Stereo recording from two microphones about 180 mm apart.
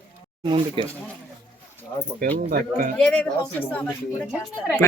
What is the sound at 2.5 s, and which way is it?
Speech, 50° right (ahead or behind).